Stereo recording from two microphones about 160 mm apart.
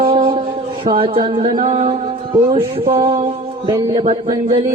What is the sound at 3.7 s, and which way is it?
Speech, 25° right (ahead or behind).